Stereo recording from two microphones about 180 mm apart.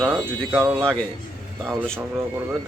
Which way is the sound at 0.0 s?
10° right (ahead or behind).